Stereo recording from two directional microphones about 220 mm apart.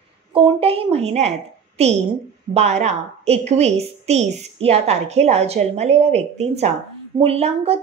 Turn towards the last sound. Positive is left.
turn(degrees=-25)  # may be behind; listen again after turning